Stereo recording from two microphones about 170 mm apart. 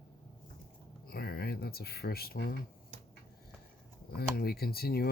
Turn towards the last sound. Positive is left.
turn(degrees=65)  # may be behind; listen again after turning